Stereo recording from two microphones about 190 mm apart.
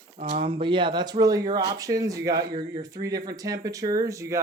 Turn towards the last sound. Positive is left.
turn(degrees=-15)  # may be behind; listen again after turning